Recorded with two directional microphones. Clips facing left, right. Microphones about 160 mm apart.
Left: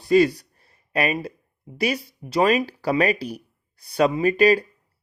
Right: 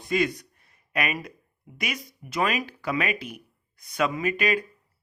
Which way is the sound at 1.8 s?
30° left (ahead or behind).